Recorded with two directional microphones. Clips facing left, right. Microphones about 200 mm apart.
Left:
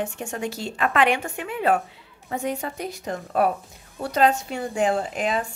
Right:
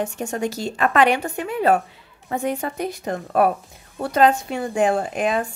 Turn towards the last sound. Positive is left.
turn(degrees=-55)  # may be behind; listen again after turning